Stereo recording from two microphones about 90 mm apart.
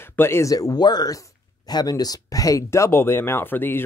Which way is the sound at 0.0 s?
25° left (ahead or behind).